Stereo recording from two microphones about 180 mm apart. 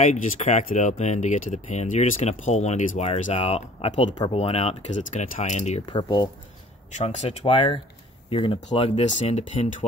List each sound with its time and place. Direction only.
0.0 s speech: 40° left (ahead or behind)
4.1 s speech: 20° left (ahead or behind)
4.4 s speech: 35° left (ahead or behind)
5.9 s speech: 25° left (ahead or behind)
7.0 s speech: 35° left (ahead or behind)